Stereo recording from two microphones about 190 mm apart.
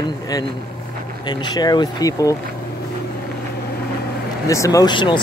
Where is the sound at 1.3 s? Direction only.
20° left (ahead or behind).